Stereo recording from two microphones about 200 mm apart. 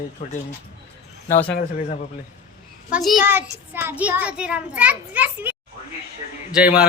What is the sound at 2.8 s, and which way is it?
A child's voice, 5° right (ahead or behind).